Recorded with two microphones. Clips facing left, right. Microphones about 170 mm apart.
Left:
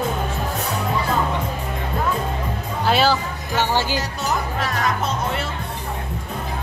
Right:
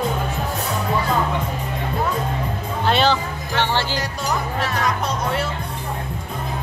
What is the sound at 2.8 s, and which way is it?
Music, 5° left (ahead or behind).